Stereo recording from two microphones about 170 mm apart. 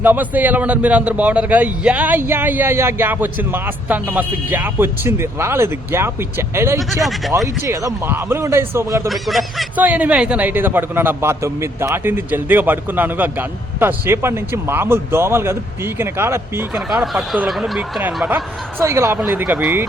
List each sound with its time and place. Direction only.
0.0 s a man's voice: 10° right (ahead or behind)
6.7 s speech: centre (ahead or behind)
7.4 s a man's voice: 15° right (ahead or behind)
9.0 s a man's voice: centre (ahead or behind)
17.0 s speech: 5° right (ahead or behind)
18.8 s a man's voice: 15° right (ahead or behind)